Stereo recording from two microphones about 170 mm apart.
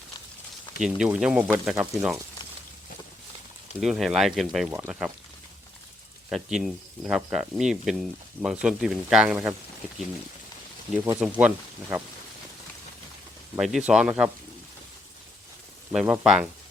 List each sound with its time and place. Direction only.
0.8 s speech: 5° right (ahead or behind)
3.8 s speech: centre (ahead or behind)
6.3 s speech: centre (ahead or behind)
11.2 s speech: 10° right (ahead or behind)
13.6 s speech: centre (ahead or behind)
15.9 s speech: 5° right (ahead or behind)